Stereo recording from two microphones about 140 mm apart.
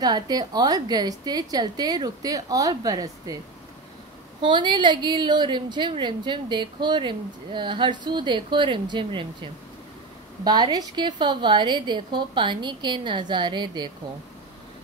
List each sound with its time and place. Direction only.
0.0 s a woman's voice: 30° right (ahead or behind)
4.4 s a woman's voice: 35° right (ahead or behind)
10.4 s a woman's voice: 30° right (ahead or behind)